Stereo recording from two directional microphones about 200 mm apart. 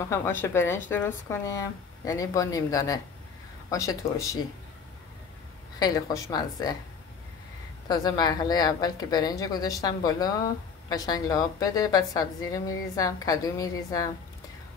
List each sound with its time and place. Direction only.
0.1 s a woman's voice: 10° left (ahead or behind)
5.8 s a woman's voice: 20° left (ahead or behind)
7.9 s a woman's voice: 20° left (ahead or behind)